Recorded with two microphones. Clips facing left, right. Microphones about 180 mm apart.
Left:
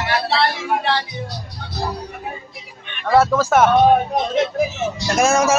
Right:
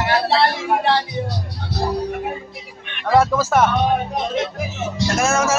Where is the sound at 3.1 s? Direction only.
15° right (ahead or behind).